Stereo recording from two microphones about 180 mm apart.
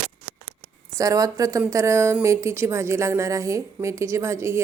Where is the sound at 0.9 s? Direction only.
20° right (ahead or behind).